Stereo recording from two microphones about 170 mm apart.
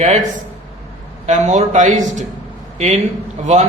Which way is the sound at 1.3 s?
45° right (ahead or behind).